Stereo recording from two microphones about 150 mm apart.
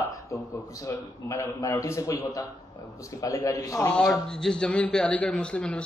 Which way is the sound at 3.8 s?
5° left (ahead or behind).